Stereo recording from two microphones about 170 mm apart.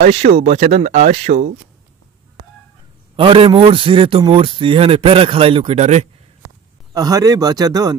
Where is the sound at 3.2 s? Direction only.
30° right (ahead or behind).